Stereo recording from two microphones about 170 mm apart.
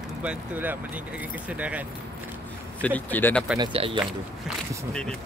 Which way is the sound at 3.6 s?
30° right (ahead or behind).